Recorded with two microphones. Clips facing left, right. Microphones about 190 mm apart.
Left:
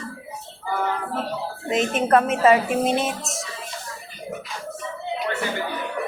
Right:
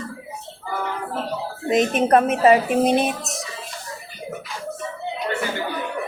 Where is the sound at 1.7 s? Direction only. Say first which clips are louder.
Right 2 dB; 15° right (ahead or behind).